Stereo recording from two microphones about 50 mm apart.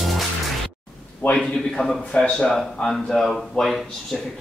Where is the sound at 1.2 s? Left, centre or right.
Left.